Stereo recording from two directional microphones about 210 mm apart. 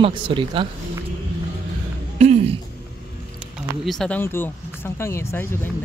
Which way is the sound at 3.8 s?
Centre (ahead or behind).